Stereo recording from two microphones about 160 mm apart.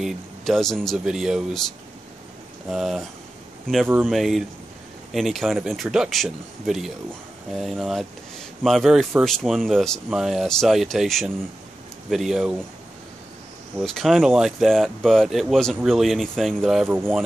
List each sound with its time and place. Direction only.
0.0 s speech: centre (ahead or behind)
2.7 s speech: centre (ahead or behind)
3.9 s speech: 10° right (ahead or behind)
13.7 s speech: centre (ahead or behind)
16.8 s speech: 15° right (ahead or behind)